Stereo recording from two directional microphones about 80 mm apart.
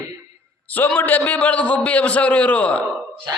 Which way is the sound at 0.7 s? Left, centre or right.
Left.